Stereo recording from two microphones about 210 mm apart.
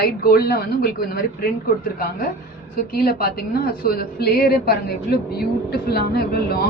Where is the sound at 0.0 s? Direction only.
50° left (ahead or behind).